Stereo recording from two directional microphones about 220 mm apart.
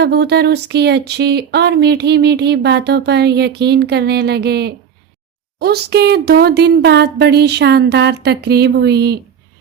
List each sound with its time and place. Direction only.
0.0 s speech: 50° right (ahead or behind)